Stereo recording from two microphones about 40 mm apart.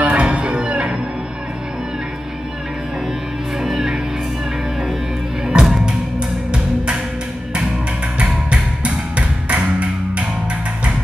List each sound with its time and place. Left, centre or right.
0.0 s music: right
3.6 s music: centre
5.5 s music: right
8.2 s music: right